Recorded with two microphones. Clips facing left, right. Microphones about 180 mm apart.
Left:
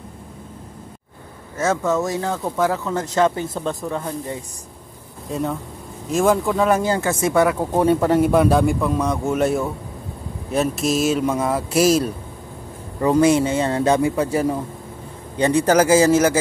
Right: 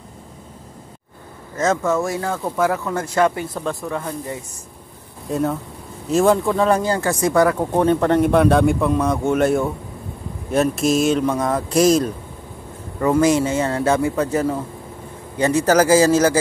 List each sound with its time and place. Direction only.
1.6 s speech: 10° left (ahead or behind)
5.3 s speech: centre (ahead or behind)
6.8 s speech: 20° left (ahead or behind)
7.5 s speech: 10° left (ahead or behind)
13.0 s speech: 20° left (ahead or behind)
15.6 s speech: 15° left (ahead or behind)